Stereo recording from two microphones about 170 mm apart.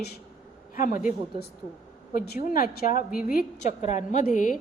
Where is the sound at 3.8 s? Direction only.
45° left (ahead or behind).